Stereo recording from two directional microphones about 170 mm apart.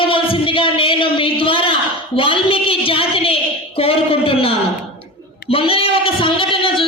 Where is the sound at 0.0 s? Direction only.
30° left (ahead or behind).